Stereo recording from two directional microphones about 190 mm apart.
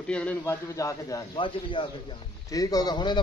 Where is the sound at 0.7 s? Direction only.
15° left (ahead or behind).